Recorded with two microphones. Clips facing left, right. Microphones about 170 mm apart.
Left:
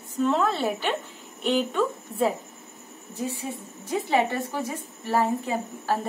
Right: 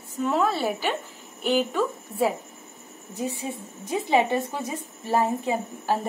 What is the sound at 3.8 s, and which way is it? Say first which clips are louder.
A woman's voice: right 1 dB; 15° right (ahead or behind).